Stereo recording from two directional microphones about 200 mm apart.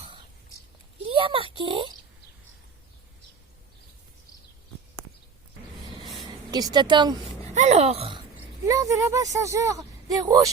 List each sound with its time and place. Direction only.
1.0 s a sound: 25° right (ahead or behind)
1.5 s speech: 25° right (ahead or behind)
6.2 s a woman's voice: 20° right (ahead or behind)
7.5 s speech: 35° right (ahead or behind)
8.4 s speech: 15° right (ahead or behind)